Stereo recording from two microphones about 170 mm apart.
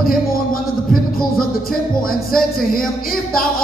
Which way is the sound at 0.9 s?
60° left (ahead or behind).